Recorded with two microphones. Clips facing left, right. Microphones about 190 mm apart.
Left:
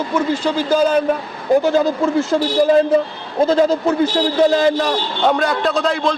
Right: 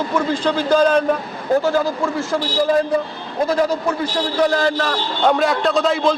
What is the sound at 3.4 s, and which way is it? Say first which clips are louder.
A man's voice: left 4 dB; 25° left (ahead or behind).